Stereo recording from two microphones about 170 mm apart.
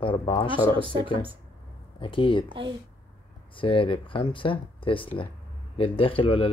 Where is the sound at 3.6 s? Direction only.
30° left (ahead or behind).